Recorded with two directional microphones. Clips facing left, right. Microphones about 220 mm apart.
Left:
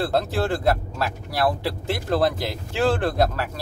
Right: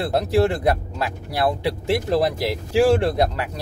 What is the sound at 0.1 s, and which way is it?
Speech, 15° right (ahead or behind).